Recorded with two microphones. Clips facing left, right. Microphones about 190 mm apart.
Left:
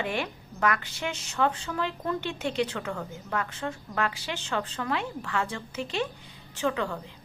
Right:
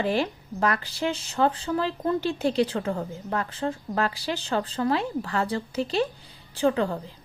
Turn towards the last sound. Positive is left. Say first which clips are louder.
# right 5 dB
turn(degrees=-35)  # may be behind; listen again after turning